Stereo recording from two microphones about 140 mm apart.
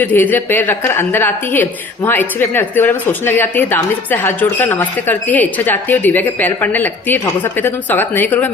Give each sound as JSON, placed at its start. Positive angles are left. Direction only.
{"t": 0.0, "sound": "speech", "side_deg": 15}